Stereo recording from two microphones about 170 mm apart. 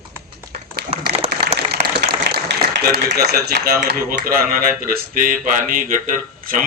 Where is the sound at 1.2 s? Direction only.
35° right (ahead or behind).